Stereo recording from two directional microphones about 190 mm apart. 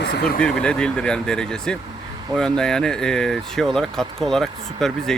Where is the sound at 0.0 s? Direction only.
65° left (ahead or behind).